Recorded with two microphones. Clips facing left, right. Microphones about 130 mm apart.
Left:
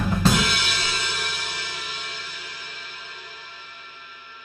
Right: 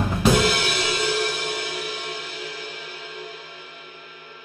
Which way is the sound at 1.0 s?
50° right (ahead or behind).